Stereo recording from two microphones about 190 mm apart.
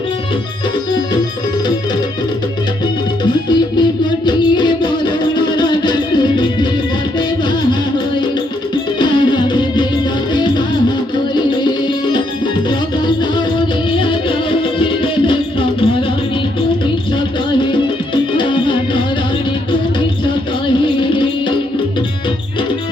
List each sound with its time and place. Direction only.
4.3 s music: 25° left (ahead or behind)
9.0 s music: 25° left (ahead or behind)
13.9 s music: 25° left (ahead or behind)
18.1 s music: 25° left (ahead or behind)
20.8 s music: 25° left (ahead or behind)